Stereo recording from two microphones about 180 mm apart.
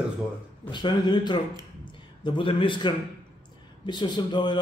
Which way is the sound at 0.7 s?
25° left (ahead or behind).